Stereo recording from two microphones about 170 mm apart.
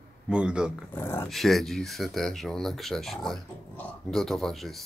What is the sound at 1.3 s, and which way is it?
Speech, centre (ahead or behind).